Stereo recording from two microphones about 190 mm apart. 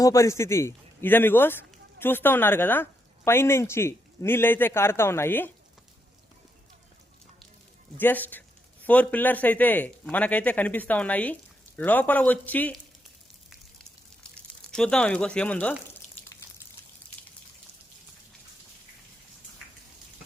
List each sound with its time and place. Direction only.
0.0 s a man's voice: 15° left (ahead or behind)
7.9 s speech: 10° left (ahead or behind)
14.3 s speech: 5° left (ahead or behind)
16.0 s drip: 35° left (ahead or behind)